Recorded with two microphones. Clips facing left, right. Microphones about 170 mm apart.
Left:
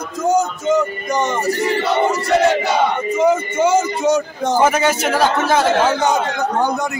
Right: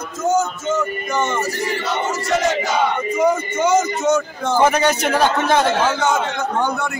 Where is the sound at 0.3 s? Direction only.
35° left (ahead or behind).